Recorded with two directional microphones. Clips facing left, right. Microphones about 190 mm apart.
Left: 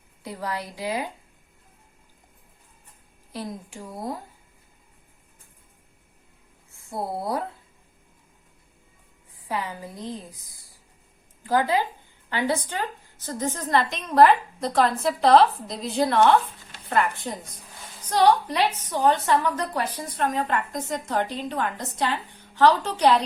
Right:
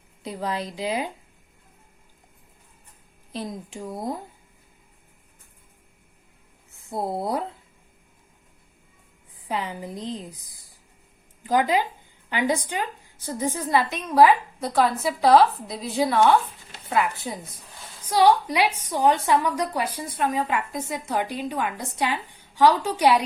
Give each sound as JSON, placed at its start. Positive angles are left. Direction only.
{"t": 0.2, "sound": "a woman's voice", "side_deg": -20}
{"t": 3.3, "sound": "a woman's voice", "side_deg": -20}
{"t": 6.7, "sound": "a woman's voice", "side_deg": -20}
{"t": 9.5, "sound": "a woman's voice", "side_deg": -20}